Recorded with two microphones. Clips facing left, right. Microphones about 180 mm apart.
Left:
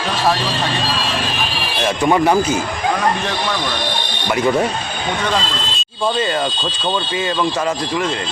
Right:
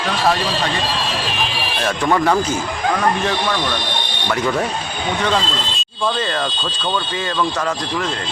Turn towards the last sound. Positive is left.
turn(degrees=10)  # may be behind; listen again after turning